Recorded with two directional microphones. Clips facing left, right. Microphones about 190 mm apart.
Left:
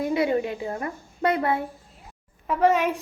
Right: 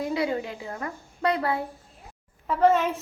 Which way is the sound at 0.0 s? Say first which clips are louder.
Left 4 dB; 25° left (ahead or behind).